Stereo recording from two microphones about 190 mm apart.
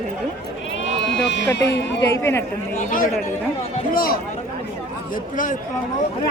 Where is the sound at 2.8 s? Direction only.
45° left (ahead or behind).